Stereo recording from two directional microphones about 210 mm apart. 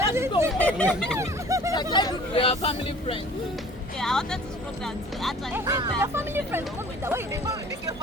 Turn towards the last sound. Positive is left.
turn(degrees=-15)  # may be behind; listen again after turning